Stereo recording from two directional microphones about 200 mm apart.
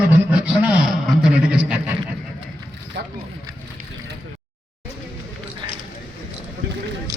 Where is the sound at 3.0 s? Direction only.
55° right (ahead or behind).